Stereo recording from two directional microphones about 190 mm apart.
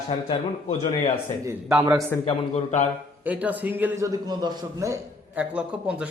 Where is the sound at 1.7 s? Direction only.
5° right (ahead or behind).